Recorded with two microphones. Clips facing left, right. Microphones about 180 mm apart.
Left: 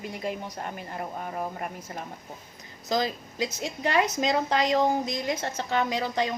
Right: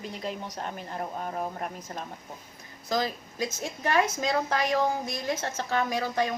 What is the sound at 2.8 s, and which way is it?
Speech, 20° left (ahead or behind).